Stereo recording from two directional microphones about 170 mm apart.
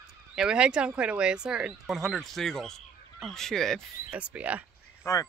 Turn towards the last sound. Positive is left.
turn(degrees=20)  # may be behind; listen again after turning